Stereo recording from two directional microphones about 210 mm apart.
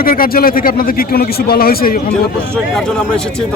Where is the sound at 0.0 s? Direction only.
45° left (ahead or behind).